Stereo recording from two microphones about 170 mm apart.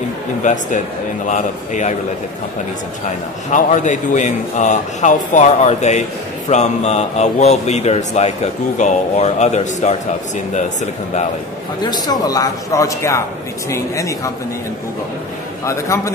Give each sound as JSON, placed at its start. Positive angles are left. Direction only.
{"t": 0.4, "sound": "a man's voice", "side_deg": 45}
{"t": 3.5, "sound": "a man's voice", "side_deg": 45}
{"t": 11.8, "sound": "speech", "side_deg": 25}
{"t": 15.6, "sound": "a man's voice", "side_deg": 15}